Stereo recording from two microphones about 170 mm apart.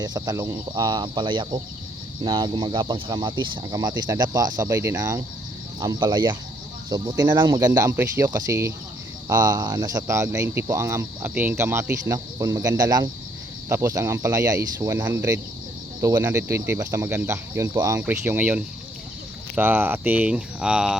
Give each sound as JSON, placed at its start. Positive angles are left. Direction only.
{"t": 0.0, "sound": "speech", "side_deg": -20}